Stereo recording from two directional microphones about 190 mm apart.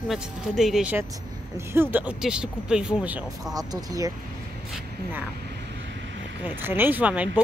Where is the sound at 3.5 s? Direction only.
20° right (ahead or behind).